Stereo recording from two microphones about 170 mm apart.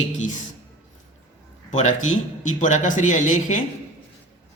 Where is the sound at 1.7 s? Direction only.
45° left (ahead or behind).